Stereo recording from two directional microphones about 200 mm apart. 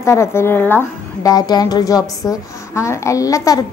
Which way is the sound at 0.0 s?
15° left (ahead or behind).